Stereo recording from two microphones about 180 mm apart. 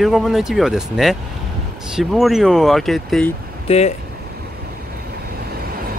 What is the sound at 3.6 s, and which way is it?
Speech, 35° left (ahead or behind).